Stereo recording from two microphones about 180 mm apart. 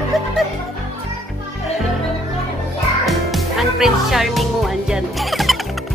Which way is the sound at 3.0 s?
Centre (ahead or behind).